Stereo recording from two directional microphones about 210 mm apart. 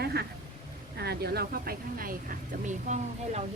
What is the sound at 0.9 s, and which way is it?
A woman's voice, 50° right (ahead or behind).